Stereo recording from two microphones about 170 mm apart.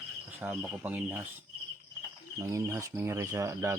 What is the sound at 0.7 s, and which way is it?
Speech, 10° right (ahead or behind).